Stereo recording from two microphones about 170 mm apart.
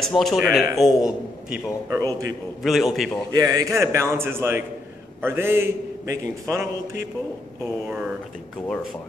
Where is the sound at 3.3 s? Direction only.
20° right (ahead or behind).